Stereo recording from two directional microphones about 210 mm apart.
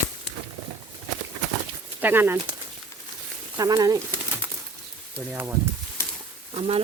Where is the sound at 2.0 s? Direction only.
10° right (ahead or behind).